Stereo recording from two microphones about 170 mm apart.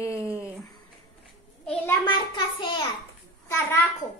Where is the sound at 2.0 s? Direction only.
30° left (ahead or behind).